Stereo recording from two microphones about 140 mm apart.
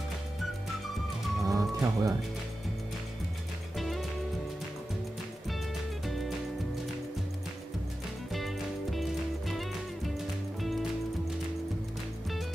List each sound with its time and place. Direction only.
1.4 s music: 25° right (ahead or behind)
3.7 s music: centre (ahead or behind)
8.3 s music: centre (ahead or behind)